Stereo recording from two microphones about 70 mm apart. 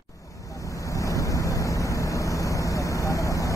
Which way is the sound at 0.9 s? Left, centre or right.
Left.